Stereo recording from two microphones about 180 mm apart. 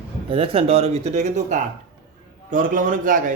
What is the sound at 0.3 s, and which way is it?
Speech, 30° right (ahead or behind).